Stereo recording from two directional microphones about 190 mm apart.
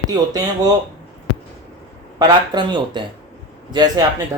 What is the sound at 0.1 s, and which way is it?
Speech, 20° right (ahead or behind).